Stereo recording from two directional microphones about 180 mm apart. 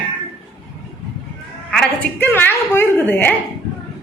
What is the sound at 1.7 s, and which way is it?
A woman's voice, 5° left (ahead or behind).